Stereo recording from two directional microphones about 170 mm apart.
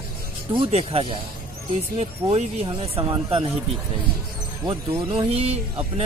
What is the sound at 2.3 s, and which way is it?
Speech, 35° right (ahead or behind).